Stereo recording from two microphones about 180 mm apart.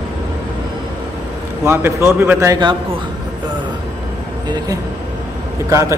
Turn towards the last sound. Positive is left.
turn(degrees=-15)  # may be behind; listen again after turning